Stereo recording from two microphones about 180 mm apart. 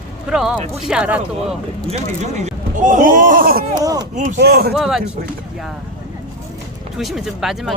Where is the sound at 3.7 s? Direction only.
20° right (ahead or behind).